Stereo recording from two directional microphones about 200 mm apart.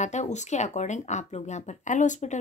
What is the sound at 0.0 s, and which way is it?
Speech, 35° left (ahead or behind).